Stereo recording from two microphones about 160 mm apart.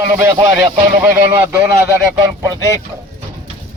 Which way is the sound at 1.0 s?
15° right (ahead or behind).